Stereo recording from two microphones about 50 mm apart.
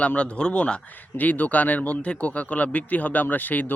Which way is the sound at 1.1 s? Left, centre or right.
Left.